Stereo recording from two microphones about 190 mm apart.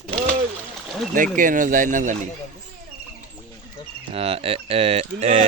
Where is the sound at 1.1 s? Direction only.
45° right (ahead or behind).